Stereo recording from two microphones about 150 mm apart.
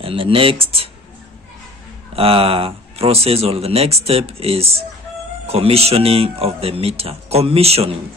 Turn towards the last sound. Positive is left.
turn(degrees=-45)  # may be behind; listen again after turning